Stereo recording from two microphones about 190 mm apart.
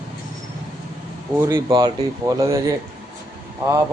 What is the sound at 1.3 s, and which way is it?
Speech, 10° right (ahead or behind).